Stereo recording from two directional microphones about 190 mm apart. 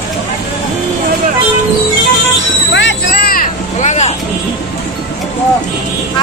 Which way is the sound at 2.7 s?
70° left (ahead or behind).